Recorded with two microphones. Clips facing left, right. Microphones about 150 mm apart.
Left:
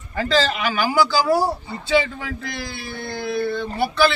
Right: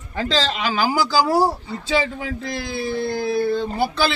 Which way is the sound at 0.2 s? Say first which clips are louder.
Left 2 dB; 25° right (ahead or behind).